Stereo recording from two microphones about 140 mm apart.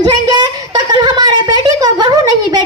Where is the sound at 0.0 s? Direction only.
30° right (ahead or behind).